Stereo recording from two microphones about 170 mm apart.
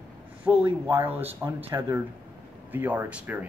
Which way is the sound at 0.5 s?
15° right (ahead or behind).